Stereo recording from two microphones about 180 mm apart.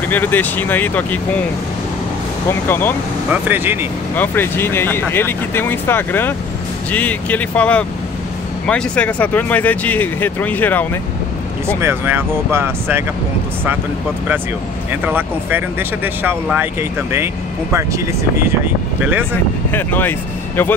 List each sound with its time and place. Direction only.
0.1 s speech: 10° left (ahead or behind)
3.3 s speech: 10° right (ahead or behind)
4.1 s speech: 10° left (ahead or behind)
11.6 s speech: 15° right (ahead or behind)
14.9 s speech: 10° right (ahead or behind)
17.7 s speech: 15° right (ahead or behind)
19.7 s speech: 10° left (ahead or behind)